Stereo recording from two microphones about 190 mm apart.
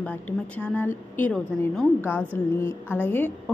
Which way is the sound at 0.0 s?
5° left (ahead or behind).